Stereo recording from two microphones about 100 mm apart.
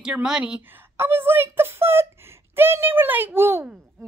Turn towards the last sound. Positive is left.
turn(degrees=-25)  # may be behind; listen again after turning